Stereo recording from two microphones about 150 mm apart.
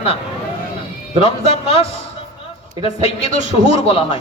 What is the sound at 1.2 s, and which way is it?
Speech, 40° left (ahead or behind).